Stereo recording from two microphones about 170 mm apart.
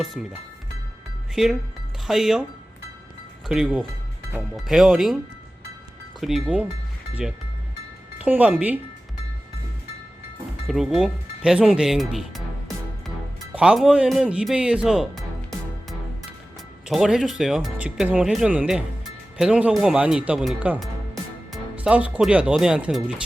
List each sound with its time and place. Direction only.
0.0 s speech: centre (ahead or behind)
1.4 s speech: centre (ahead or behind)
3.4 s speech: 5° right (ahead or behind)
6.1 s speech: centre (ahead or behind)
10.7 s speech: centre (ahead or behind)